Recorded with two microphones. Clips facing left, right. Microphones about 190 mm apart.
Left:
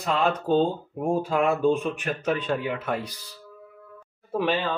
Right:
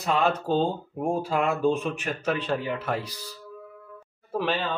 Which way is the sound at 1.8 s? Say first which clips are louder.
Left 1 dB; 5° right (ahead or behind).